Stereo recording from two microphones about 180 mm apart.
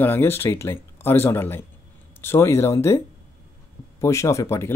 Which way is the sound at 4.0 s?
15° left (ahead or behind).